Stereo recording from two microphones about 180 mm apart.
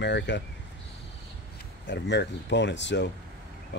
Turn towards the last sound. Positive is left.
turn(degrees=80)